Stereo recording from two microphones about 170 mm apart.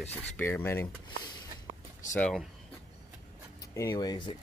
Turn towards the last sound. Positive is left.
turn(degrees=25)  # may be behind; listen again after turning